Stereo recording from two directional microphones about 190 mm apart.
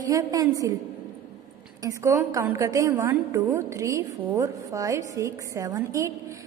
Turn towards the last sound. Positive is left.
turn(degrees=-15)  # may be behind; listen again after turning